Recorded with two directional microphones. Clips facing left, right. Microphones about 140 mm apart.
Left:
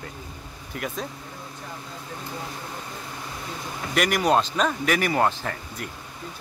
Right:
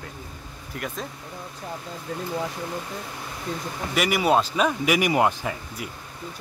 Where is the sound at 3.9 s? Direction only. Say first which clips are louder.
Even; 5° right (ahead or behind).